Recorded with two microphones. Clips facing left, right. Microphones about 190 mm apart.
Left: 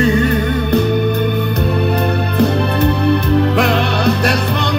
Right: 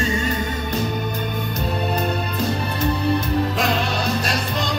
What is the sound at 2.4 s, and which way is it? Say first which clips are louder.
Music: left 9 dB; 65° left (ahead or behind).